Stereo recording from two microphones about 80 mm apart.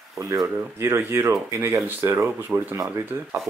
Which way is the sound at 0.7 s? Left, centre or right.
Right.